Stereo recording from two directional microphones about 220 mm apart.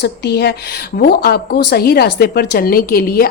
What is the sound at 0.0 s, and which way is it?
A woman's voice, 50° left (ahead or behind).